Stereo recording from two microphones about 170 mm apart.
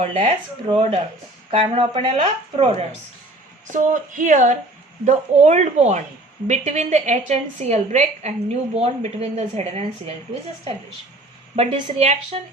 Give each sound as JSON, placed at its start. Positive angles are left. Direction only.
{"t": 0.0, "sound": "a woman's voice", "side_deg": -35}
{"t": 3.7, "sound": "a woman's voice", "side_deg": -50}
{"t": 11.5, "sound": "a woman's voice", "side_deg": -35}